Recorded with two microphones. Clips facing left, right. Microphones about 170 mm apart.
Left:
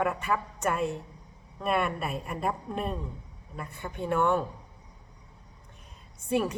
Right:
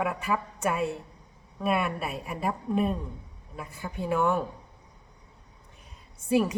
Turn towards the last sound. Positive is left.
turn(degrees=-5)  # may be behind; listen again after turning